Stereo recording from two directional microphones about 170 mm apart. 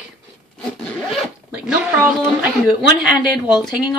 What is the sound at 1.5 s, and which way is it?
A woman's voice, 10° right (ahead or behind).